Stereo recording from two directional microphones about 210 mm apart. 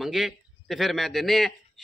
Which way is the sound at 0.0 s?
Centre (ahead or behind).